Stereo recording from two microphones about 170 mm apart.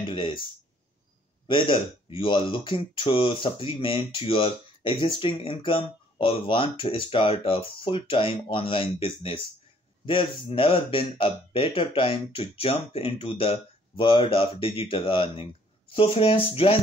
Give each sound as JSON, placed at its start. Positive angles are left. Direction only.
{"t": 0.0, "sound": "speech", "side_deg": 30}
{"t": 1.5, "sound": "speech", "side_deg": 30}